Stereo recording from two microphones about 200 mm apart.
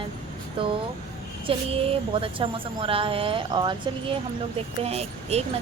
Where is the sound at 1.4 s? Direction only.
30° right (ahead or behind).